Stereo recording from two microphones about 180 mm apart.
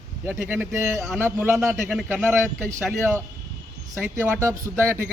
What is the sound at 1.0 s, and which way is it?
Speech, centre (ahead or behind).